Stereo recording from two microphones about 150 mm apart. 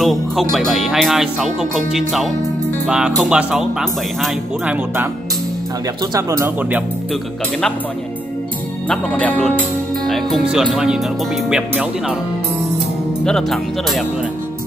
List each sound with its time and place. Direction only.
0.0 s speech: centre (ahead or behind)
6.1 s speech: 20° right (ahead or behind)
8.8 s speech: 10° left (ahead or behind)
13.2 s speech: 5° left (ahead or behind)